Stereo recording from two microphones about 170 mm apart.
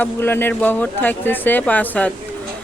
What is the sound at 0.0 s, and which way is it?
Speech, 10° left (ahead or behind).